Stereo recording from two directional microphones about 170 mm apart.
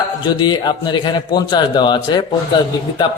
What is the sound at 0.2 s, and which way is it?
A man's voice, 25° left (ahead or behind).